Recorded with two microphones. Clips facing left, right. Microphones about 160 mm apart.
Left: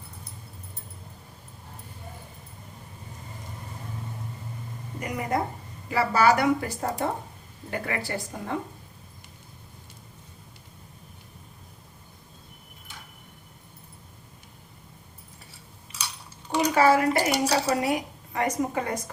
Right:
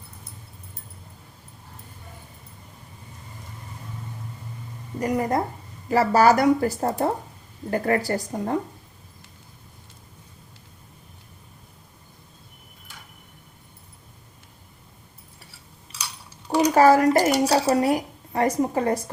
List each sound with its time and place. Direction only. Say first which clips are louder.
4.9 s speech: right 5 dB; 35° right (ahead or behind)
16.7 s speech: right 5 dB; 40° right (ahead or behind)